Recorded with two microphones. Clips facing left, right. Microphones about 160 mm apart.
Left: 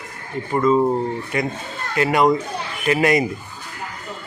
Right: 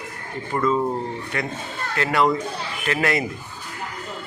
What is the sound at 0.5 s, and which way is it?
Speech, 15° left (ahead or behind).